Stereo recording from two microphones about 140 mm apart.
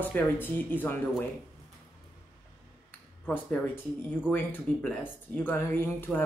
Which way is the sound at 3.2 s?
10° left (ahead or behind).